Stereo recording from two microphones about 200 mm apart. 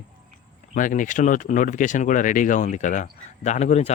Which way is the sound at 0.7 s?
40° left (ahead or behind).